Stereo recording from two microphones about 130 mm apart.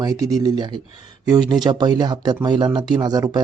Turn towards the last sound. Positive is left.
turn(degrees=-30)  # may be behind; listen again after turning